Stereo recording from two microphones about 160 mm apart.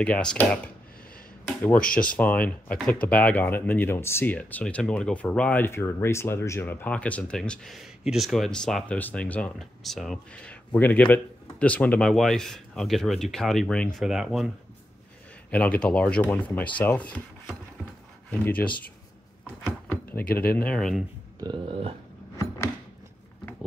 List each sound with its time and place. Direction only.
0.0 s speech: 5° left (ahead or behind)
2.0 s speech: 10° left (ahead or behind)
15.5 s speech: 10° left (ahead or behind)
19.6 s a sound: 15° left (ahead or behind)
20.5 s speech: 5° left (ahead or behind)
21.4 s speech: 30° right (ahead or behind)